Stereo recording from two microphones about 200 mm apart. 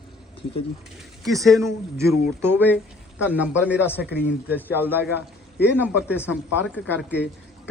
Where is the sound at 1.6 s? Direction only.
15° right (ahead or behind).